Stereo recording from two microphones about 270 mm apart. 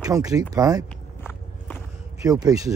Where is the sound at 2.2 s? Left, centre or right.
Centre.